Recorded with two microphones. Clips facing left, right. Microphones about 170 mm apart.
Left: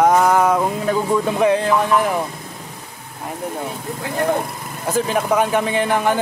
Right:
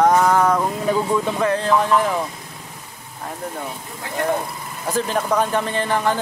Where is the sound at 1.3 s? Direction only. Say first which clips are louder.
Left 4 dB; 15° left (ahead or behind).